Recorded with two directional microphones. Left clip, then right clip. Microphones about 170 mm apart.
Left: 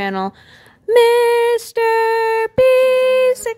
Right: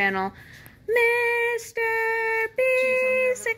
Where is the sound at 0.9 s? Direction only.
65° left (ahead or behind).